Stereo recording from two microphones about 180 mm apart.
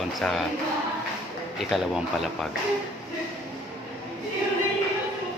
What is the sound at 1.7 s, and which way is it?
Speech, centre (ahead or behind).